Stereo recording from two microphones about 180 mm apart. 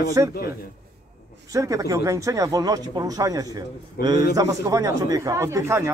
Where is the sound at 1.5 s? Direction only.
20° right (ahead or behind).